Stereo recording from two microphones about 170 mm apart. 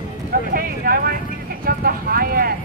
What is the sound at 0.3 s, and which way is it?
Clip-clop, 60° right (ahead or behind).